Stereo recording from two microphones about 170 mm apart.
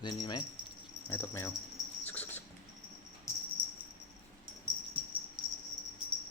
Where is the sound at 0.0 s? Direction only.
25° left (ahead or behind).